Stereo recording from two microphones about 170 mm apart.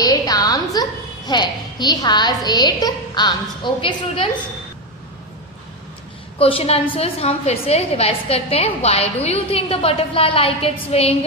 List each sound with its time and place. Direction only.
0.0 s a woman's voice: 20° left (ahead or behind)
6.3 s a woman's voice: 35° left (ahead or behind)